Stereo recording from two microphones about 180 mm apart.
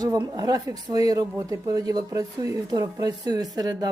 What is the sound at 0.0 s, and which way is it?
A woman's voice, 20° right (ahead or behind).